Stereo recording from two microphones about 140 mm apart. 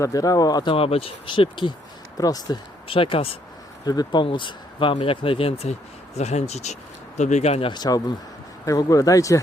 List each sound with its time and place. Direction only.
0.0 s speech: 25° left (ahead or behind)
0.7 s speech: 45° left (ahead or behind); by 2.6 s 25° left (ahead or behind)
2.8 s speech: 40° left (ahead or behind)
3.8 s speech: 30° left (ahead or behind)
6.1 s speech: 55° left (ahead or behind)
7.7 s speech: 30° left (ahead or behind)